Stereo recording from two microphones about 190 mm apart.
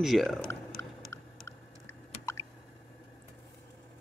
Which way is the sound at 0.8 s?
15° left (ahead or behind).